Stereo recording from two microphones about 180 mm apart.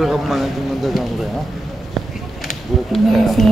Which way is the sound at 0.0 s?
Centre (ahead or behind).